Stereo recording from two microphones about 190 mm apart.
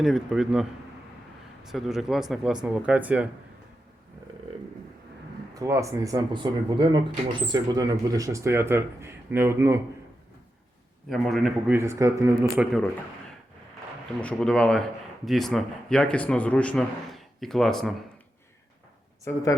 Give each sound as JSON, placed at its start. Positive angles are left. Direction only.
{"t": 0.0, "sound": "speech", "side_deg": 0}
{"t": 1.7, "sound": "speech", "side_deg": 0}
{"t": 5.5, "sound": "speech", "side_deg": -15}
{"t": 11.1, "sound": "speech", "side_deg": 0}
{"t": 11.8, "sound": "speech", "side_deg": -15}
{"t": 14.2, "sound": "speech", "side_deg": 5}
{"t": 19.2, "sound": "speech", "side_deg": 20}